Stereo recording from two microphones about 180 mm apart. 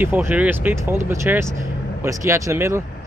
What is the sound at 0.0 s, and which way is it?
Speech, 10° right (ahead or behind).